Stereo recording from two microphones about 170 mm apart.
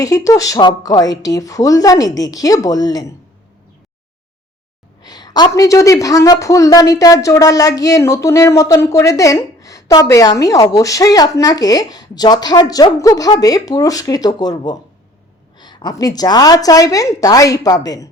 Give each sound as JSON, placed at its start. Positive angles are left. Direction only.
{"t": 0.0, "sound": "a woman's voice", "side_deg": 20}
{"t": 5.0, "sound": "a woman's voice", "side_deg": 25}